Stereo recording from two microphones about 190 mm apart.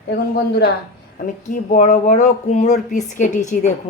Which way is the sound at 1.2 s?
45° left (ahead or behind).